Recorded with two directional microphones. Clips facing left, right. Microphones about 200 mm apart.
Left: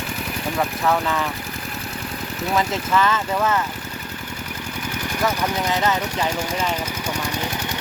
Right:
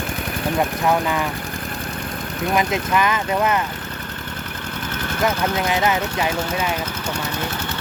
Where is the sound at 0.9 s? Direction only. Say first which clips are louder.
Even; 15° right (ahead or behind).